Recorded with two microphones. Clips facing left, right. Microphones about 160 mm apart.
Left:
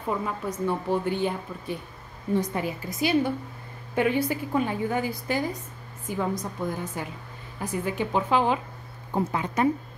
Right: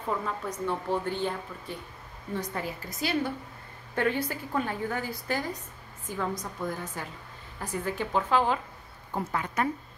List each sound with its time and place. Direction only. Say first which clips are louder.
0.1 s a woman's voice: left 3 dB; 10° left (ahead or behind)